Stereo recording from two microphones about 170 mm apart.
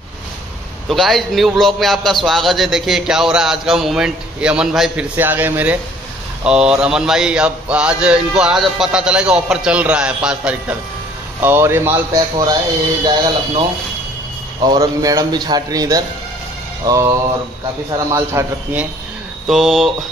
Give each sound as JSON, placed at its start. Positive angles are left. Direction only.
{"t": 0.8, "sound": "a man's voice", "side_deg": 0}
{"t": 13.0, "sound": "a man's voice", "side_deg": -25}
{"t": 19.4, "sound": "a man's voice", "side_deg": 0}